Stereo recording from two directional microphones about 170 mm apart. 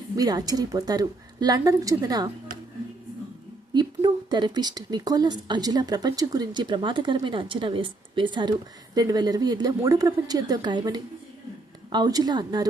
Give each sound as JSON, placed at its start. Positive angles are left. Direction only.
{"t": 0.2, "sound": "a woman's voice", "side_deg": -20}
{"t": 3.8, "sound": "a woman's voice", "side_deg": -25}